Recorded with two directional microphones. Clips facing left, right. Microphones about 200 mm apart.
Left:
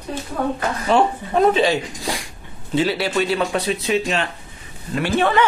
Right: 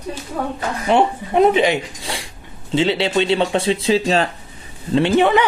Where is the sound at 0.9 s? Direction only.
20° right (ahead or behind).